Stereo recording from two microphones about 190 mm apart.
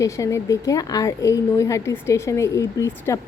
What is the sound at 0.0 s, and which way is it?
A woman's voice, 15° left (ahead or behind).